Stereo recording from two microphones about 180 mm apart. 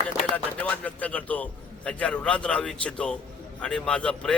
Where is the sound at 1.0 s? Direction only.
5° left (ahead or behind).